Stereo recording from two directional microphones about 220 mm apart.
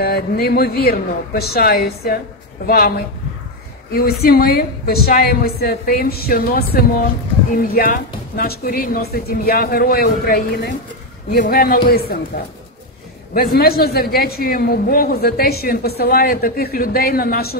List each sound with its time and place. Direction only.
0.0 s a man's voice: 45° left (ahead or behind)
3.9 s a man's voice: 45° left (ahead or behind)
13.3 s a man's voice: 45° left (ahead or behind)